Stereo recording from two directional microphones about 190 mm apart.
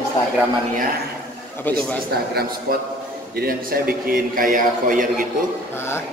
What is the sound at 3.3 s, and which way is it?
A man's voice, 50° right (ahead or behind).